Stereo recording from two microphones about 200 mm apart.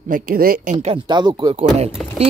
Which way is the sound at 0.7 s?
25° right (ahead or behind).